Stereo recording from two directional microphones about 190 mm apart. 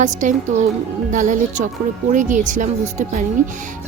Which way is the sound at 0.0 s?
40° right (ahead or behind).